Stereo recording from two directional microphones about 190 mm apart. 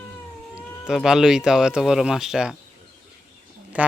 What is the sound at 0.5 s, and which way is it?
Speech, 5° right (ahead or behind).